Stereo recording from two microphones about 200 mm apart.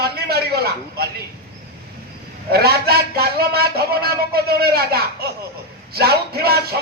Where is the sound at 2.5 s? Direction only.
50° right (ahead or behind).